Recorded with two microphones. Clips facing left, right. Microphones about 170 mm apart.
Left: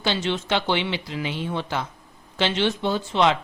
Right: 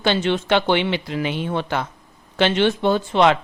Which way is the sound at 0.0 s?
55° right (ahead or behind).